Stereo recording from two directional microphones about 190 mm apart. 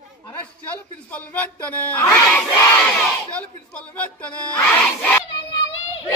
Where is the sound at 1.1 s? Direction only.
10° left (ahead or behind).